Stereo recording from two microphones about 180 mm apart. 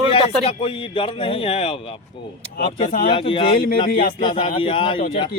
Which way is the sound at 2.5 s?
50° left (ahead or behind).